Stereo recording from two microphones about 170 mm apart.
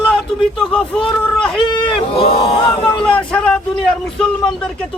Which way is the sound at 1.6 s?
30° left (ahead or behind).